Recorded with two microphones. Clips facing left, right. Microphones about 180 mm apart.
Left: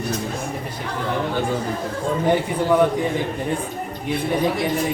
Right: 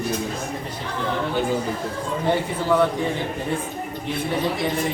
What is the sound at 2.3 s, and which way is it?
Speech, 15° left (ahead or behind).